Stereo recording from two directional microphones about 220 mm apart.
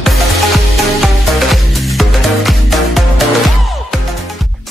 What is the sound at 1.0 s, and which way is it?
Music, centre (ahead or behind).